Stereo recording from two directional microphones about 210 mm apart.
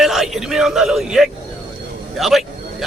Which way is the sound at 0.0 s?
Centre (ahead or behind).